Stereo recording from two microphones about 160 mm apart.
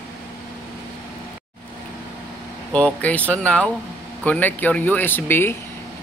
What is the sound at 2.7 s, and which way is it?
Speech, 10° left (ahead or behind).